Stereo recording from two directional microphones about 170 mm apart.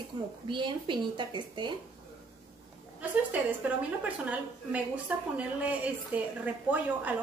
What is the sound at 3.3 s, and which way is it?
A woman's voice, 10° right (ahead or behind).